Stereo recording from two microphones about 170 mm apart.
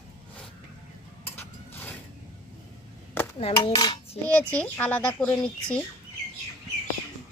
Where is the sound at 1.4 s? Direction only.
10° left (ahead or behind).